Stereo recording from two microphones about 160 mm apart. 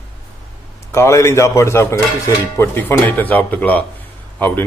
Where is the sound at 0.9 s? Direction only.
20° left (ahead or behind).